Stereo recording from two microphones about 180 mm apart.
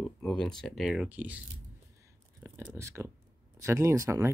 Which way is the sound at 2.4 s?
15° right (ahead or behind).